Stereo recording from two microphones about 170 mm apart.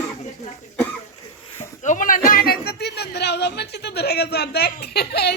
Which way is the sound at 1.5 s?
45° left (ahead or behind).